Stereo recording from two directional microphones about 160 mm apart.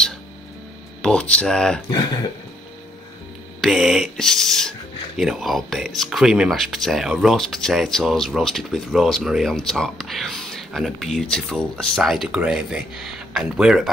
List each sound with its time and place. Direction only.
1.0 s speech: 5° left (ahead or behind)
3.6 s speech: centre (ahead or behind)